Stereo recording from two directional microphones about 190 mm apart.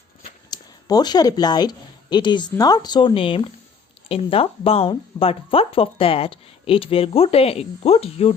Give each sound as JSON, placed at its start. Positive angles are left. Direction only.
{"t": 0.5, "sound": "speech", "side_deg": 20}